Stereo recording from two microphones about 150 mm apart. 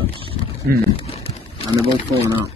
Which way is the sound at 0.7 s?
80° right.